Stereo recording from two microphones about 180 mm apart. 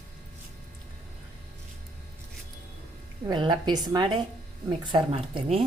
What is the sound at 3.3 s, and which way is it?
Speech, 25° right (ahead or behind).